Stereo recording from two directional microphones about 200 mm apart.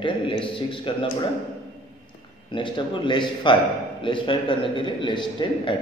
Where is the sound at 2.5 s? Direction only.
25° left (ahead or behind).